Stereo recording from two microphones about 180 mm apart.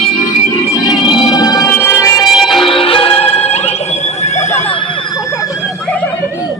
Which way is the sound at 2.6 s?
30° left (ahead or behind).